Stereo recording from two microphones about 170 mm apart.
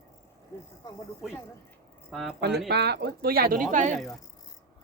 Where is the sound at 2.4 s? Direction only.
75° right (ahead or behind); by 4.0 s 45° right (ahead or behind).